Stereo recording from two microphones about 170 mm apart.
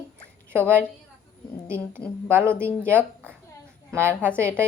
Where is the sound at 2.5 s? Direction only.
15° right (ahead or behind).